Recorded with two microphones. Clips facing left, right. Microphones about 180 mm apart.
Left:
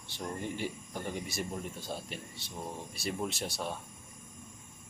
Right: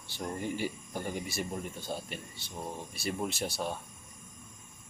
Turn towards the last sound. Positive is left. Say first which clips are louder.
# right 2 dB
turn(degrees=0)  # may be behind; listen again after turning